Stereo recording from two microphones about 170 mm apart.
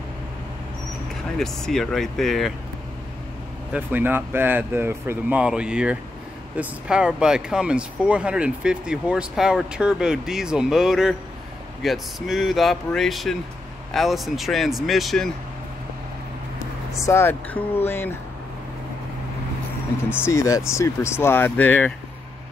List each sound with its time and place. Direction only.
1.4 s speech: 5° left (ahead or behind)
3.7 s speech: 10° right (ahead or behind)
17.0 s speech: 15° left (ahead or behind)
20.2 s speech: 20° left (ahead or behind)